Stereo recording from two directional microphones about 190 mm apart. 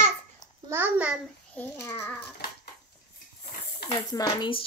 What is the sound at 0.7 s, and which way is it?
Speech, 10° right (ahead or behind).